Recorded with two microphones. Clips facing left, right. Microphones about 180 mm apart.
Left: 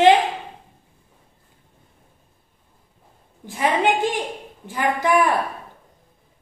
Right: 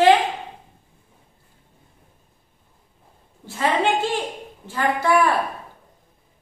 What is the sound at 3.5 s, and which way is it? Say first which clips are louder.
A woman's voice: left 1 dB; 15° left (ahead or behind).